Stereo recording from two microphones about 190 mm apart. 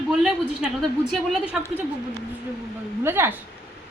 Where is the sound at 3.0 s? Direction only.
10° right (ahead or behind).